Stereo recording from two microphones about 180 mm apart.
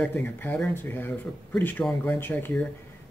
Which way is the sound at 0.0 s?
10° left (ahead or behind).